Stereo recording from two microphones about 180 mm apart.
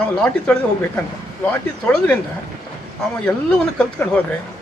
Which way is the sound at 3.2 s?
5° left (ahead or behind).